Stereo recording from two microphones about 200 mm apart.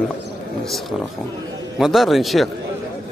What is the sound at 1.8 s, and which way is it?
Speech, centre (ahead or behind).